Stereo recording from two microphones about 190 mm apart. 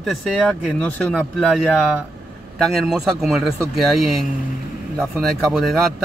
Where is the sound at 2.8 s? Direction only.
Centre (ahead or behind).